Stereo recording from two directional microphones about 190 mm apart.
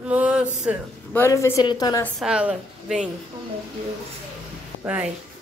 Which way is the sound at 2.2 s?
5° right (ahead or behind).